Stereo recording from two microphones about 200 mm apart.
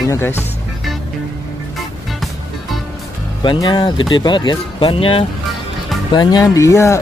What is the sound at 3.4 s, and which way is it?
Speech, 25° left (ahead or behind).